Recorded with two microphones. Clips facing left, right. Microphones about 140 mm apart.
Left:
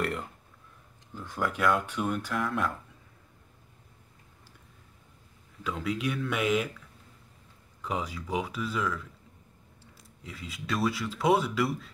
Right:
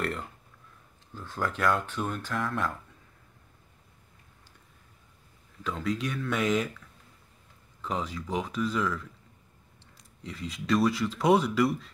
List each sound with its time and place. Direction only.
1.1 s speech: 15° left (ahead or behind)
5.6 s speech: 10° left (ahead or behind)
7.8 s speech: 10° left (ahead or behind)